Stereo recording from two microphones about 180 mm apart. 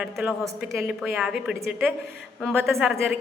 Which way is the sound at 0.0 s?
5° right (ahead or behind).